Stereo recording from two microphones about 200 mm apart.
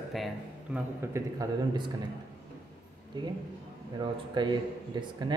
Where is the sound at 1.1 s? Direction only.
15° right (ahead or behind).